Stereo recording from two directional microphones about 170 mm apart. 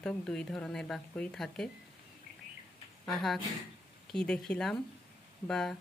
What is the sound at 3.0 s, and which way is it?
A woman's voice, centre (ahead or behind).